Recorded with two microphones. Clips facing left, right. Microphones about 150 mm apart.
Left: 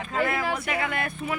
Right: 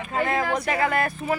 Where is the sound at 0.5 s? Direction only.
40° right (ahead or behind).